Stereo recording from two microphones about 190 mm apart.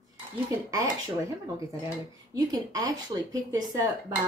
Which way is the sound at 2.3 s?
20° right (ahead or behind).